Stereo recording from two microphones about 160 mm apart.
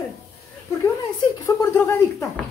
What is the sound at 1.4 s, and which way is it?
Speech, 15° left (ahead or behind).